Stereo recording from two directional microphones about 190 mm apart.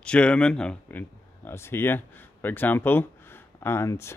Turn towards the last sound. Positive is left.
turn(degrees=15)  # may be behind; listen again after turning